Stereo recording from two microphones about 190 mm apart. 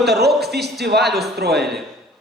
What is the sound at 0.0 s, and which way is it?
A man's voice, 60° right (ahead or behind).